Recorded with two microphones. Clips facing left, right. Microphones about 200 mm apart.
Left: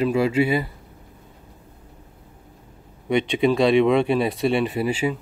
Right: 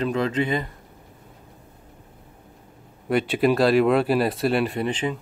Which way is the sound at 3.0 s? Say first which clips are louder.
Left 1 dB; 5° right (ahead or behind).